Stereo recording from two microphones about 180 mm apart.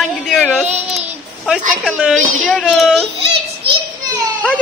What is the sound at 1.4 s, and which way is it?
A child's voice, 5° right (ahead or behind).